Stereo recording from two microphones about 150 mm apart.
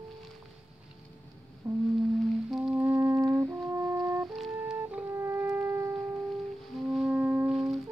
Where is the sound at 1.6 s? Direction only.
20° right (ahead or behind).